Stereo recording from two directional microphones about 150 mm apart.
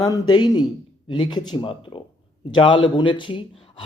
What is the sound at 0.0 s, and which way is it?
A man's voice, 25° left (ahead or behind).